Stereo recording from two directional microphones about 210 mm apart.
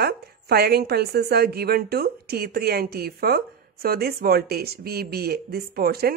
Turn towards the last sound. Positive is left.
turn(degrees=-45)  # may be behind; listen again after turning